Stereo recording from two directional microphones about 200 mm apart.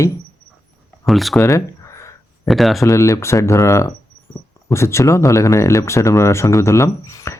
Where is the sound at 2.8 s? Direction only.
15° left (ahead or behind).